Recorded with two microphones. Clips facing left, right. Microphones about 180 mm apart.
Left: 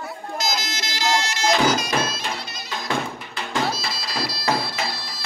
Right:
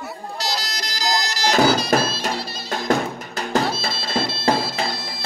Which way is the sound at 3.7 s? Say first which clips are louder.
Right 3 dB; 30° right (ahead or behind).